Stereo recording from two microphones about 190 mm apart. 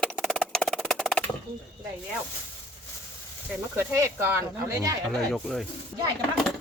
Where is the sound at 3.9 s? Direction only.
10° right (ahead or behind).